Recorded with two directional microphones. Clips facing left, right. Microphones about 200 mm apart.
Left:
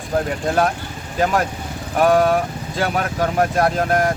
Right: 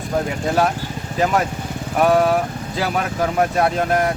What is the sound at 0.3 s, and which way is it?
Speech, centre (ahead or behind).